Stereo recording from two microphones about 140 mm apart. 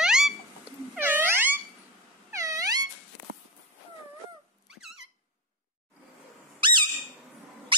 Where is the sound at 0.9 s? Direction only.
15° right (ahead or behind).